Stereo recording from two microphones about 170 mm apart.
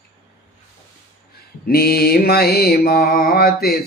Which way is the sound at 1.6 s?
65° left (ahead or behind).